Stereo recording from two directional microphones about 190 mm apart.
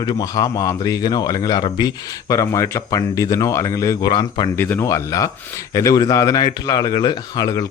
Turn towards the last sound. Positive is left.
turn(degrees=20)  # may be behind; listen again after turning